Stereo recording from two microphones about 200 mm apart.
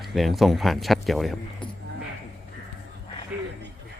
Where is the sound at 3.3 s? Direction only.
5° right (ahead or behind).